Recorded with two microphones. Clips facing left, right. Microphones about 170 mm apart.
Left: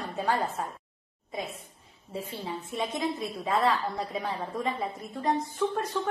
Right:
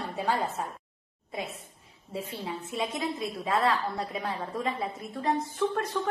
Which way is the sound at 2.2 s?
Centre (ahead or behind).